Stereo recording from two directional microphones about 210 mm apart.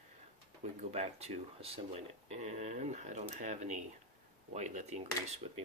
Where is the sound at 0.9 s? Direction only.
30° right (ahead or behind).